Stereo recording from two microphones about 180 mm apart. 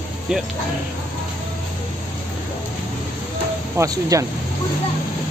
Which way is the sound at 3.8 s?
20° right (ahead or behind).